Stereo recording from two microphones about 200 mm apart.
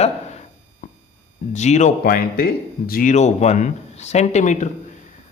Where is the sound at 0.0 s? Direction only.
35° left (ahead or behind).